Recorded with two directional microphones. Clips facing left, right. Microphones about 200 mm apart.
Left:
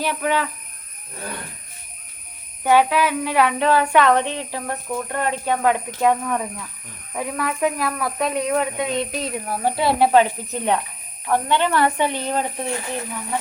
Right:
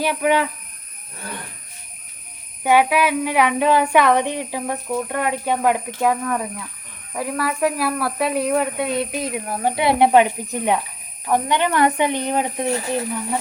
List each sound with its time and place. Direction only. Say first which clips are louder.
0.0 s speech: right 3 dB; 10° right (ahead or behind)
2.6 s speech: even; 10° right (ahead or behind)